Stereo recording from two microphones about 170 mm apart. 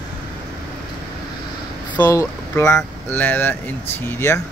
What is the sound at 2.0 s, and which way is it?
Speech, 20° left (ahead or behind).